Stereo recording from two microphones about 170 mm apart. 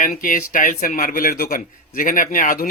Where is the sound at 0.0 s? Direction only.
55° left (ahead or behind).